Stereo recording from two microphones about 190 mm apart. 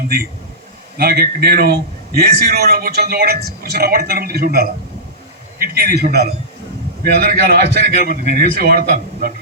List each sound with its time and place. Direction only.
0.9 s a man's voice: 55° right (ahead or behind)